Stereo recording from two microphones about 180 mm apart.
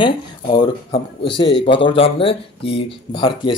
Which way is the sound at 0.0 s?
30° left (ahead or behind).